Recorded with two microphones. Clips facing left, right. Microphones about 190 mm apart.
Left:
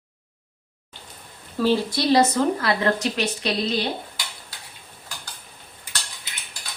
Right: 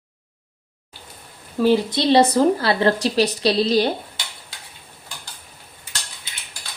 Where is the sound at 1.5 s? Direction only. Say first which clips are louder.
Right 4 dB; 15° right (ahead or behind); by 3.8 s 35° right (ahead or behind).